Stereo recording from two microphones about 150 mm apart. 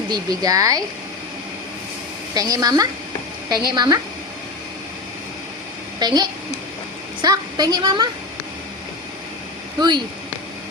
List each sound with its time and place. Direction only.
0.1 s a woman's voice: 25° right (ahead or behind)
2.3 s a woman's voice: 25° right (ahead or behind)
6.0 s a woman's voice: 30° right (ahead or behind)
9.8 s a woman's voice: 30° right (ahead or behind)